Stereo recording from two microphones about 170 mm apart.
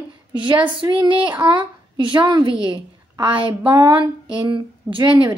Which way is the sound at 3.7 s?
25° right (ahead or behind).